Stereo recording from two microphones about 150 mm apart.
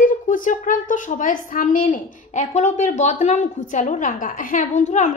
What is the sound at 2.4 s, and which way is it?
A woman's voice, 50° left (ahead or behind).